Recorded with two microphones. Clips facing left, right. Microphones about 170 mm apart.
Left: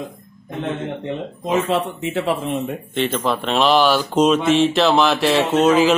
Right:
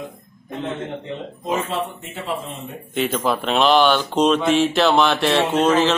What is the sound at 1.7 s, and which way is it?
Speech, 80° left.